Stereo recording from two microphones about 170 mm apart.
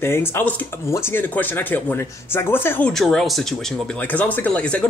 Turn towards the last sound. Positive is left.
turn(degrees=5)  # may be behind; listen again after turning